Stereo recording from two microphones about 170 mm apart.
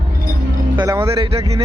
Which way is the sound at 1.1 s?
35° right (ahead or behind).